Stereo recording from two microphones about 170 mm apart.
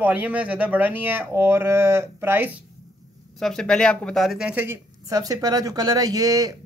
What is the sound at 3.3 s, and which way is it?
Speech, centre (ahead or behind).